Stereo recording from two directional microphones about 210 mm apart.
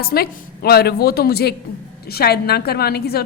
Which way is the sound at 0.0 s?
45° left (ahead or behind).